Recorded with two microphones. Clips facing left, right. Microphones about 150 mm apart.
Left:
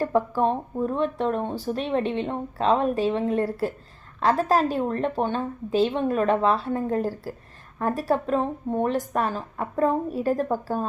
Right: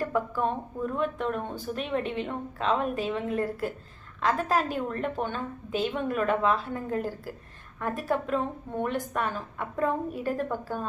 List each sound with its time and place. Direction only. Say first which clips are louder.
0.0 s speech: left 5 dB; 35° left (ahead or behind)